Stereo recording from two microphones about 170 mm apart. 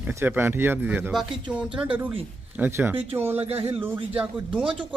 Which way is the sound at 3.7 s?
10° right (ahead or behind).